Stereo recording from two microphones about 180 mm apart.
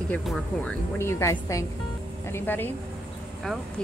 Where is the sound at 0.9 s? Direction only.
15° left (ahead or behind).